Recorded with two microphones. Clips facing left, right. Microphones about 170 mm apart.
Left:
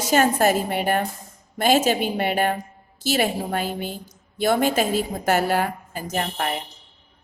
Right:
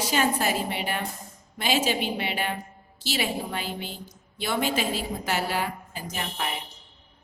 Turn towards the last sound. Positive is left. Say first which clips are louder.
# left 6 dB
turn(degrees=50)  # may be behind; listen again after turning